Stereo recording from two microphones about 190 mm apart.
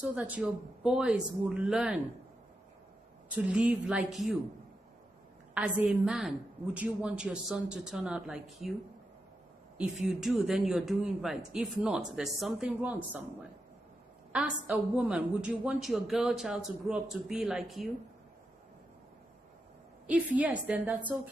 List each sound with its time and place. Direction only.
0.0 s speech: 5° right (ahead or behind)
3.3 s speech: 5° right (ahead or behind)
5.5 s speech: 5° right (ahead or behind)
9.8 s speech: 5° right (ahead or behind)
14.3 s a woman's voice: 5° right (ahead or behind)
20.1 s a woman's voice: 5° right (ahead or behind)